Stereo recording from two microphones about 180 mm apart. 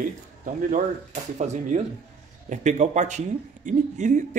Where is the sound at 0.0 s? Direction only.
45° right (ahead or behind).